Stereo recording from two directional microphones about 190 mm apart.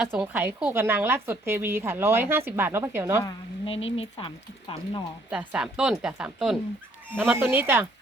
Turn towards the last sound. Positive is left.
turn(degrees=-10)  # may be behind; listen again after turning